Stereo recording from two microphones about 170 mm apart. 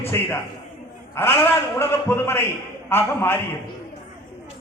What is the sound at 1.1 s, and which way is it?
A man's voice, 15° left (ahead or behind).